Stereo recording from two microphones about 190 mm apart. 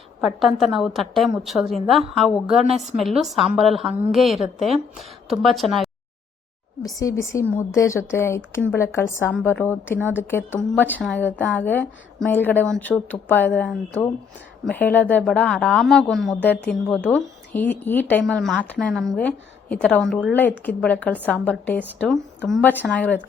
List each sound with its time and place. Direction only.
0.2 s speech: centre (ahead or behind)
6.8 s a woman's voice: 15° left (ahead or behind)